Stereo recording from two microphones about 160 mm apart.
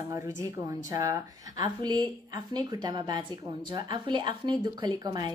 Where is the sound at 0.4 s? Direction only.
20° right (ahead or behind).